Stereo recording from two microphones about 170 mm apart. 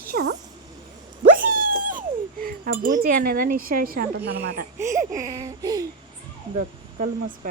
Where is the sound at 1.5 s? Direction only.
55° right (ahead or behind).